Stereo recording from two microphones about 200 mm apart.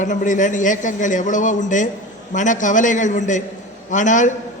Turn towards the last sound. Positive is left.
turn(degrees=40)  # may be behind; listen again after turning